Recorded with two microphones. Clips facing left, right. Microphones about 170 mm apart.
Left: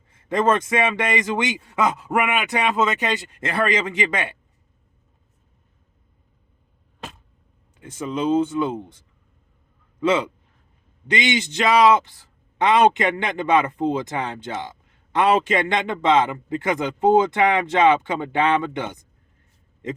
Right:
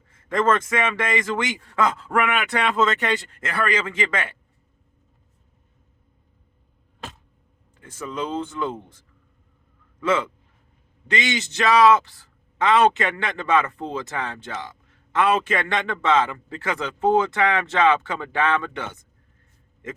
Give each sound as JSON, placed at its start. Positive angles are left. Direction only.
{"t": 0.3, "sound": "a man's voice", "side_deg": 20}
{"t": 7.8, "sound": "a man's voice", "side_deg": 20}
{"t": 10.0, "sound": "a man's voice", "side_deg": 15}